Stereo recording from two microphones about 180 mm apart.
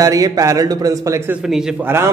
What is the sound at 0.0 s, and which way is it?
A man's voice, 20° right (ahead or behind).